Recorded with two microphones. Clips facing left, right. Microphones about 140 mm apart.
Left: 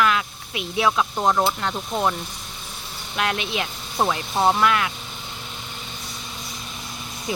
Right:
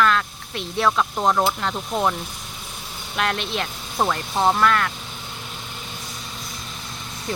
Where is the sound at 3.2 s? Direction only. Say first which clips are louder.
Even; centre (ahead or behind).